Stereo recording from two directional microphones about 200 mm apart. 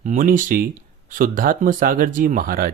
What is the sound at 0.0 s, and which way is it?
Speech, 40° right (ahead or behind).